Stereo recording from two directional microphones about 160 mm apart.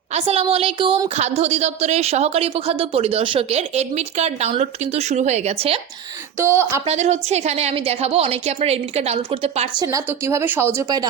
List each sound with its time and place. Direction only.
0.1 s a woman's voice: 40° right (ahead or behind)
6.3 s speech: 15° right (ahead or behind)
6.8 s a woman's voice: 45° right (ahead or behind)
9.8 s speech: 20° right (ahead or behind)